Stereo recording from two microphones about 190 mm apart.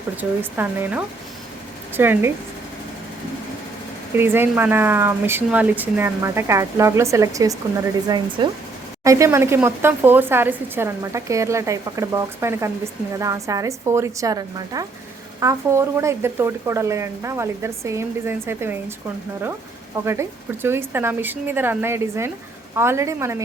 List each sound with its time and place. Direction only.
0.2 s speech: 10° right (ahead or behind)
4.1 s speech: 10° right (ahead or behind)
20.1 s speech: 15° right (ahead or behind)